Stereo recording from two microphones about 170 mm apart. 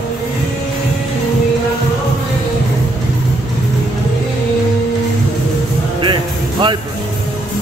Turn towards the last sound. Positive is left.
turn(degrees=-30)  # may be behind; listen again after turning